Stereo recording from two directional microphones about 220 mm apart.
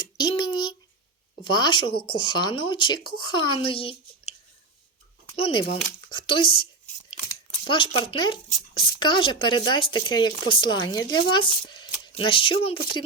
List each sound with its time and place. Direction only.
0.2 s a sound: 20° left (ahead or behind)
1.5 s speech: 20° left (ahead or behind)
5.4 s speech: 25° left (ahead or behind)
7.7 s speech: 20° left (ahead or behind)